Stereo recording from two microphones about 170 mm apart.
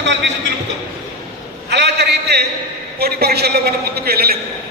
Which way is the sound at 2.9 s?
65° right (ahead or behind).